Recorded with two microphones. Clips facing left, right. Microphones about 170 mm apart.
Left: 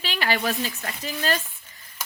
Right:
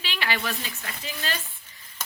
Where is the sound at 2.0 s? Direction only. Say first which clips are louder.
Left 1 dB; 10° left (ahead or behind).